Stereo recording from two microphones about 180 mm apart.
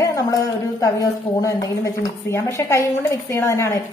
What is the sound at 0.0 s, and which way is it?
A woman's voice, 20° left (ahead or behind).